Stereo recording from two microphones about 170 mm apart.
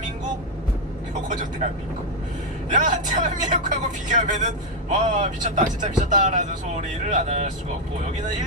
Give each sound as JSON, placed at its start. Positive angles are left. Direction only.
{"t": 2.7, "sound": "speech", "side_deg": -45}